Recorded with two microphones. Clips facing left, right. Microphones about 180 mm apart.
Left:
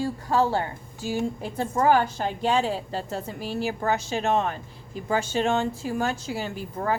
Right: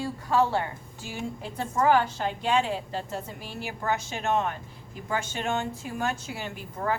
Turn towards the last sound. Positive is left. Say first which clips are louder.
# left 3 dB
turn(degrees=35)  # may be behind; listen again after turning